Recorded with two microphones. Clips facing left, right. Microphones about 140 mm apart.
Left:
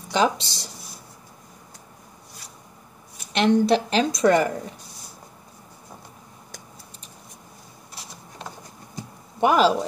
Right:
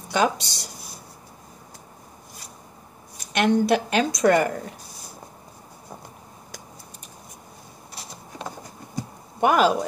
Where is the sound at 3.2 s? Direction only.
30° left (ahead or behind).